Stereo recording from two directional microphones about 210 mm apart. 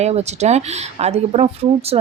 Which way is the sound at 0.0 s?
30° right (ahead or behind).